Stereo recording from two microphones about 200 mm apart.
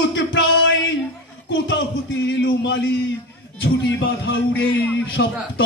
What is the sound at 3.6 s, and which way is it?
A man's voice, 65° left (ahead or behind).